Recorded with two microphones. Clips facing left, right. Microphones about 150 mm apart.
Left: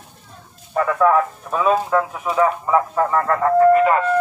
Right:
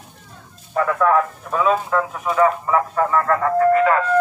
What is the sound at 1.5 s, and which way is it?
Speech, 5° left (ahead or behind).